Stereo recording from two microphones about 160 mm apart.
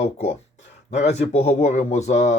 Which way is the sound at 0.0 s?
45° left (ahead or behind).